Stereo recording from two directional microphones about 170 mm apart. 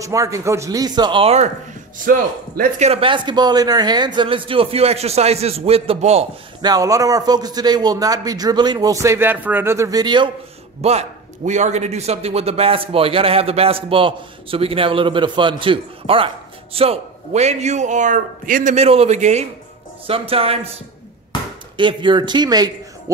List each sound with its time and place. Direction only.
0.0 s a man's voice: 20° right (ahead or behind); by 1.5 s 35° right (ahead or behind)
2.1 s speech: 60° right (ahead or behind)
2.8 s a man's voice: 35° right (ahead or behind)
6.6 s a man's voice: 20° right (ahead or behind)
10.8 s a man's voice: 40° right (ahead or behind)
21.3 s a sound: 25° left (ahead or behind)
21.7 s speech: 30° right (ahead or behind)